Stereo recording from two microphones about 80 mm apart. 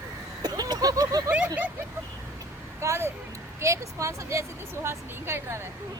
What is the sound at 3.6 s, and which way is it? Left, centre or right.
Speech, right.